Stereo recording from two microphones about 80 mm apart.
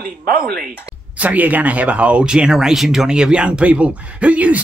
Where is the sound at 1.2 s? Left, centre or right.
Centre.